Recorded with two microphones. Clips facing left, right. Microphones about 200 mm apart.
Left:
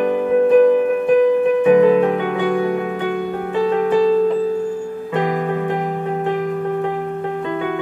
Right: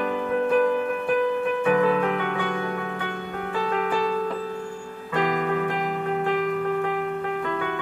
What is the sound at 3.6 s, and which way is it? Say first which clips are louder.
Music: left 10 dB; 20° left (ahead or behind).